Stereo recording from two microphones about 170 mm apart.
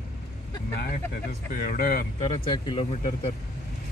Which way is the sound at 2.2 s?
35° left (ahead or behind).